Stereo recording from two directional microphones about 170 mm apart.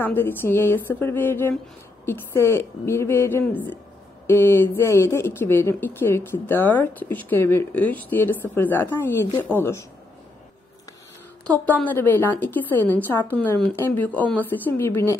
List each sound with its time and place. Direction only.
0.0 s a woman's voice: 10° left (ahead or behind)
11.4 s a woman's voice: 10° left (ahead or behind)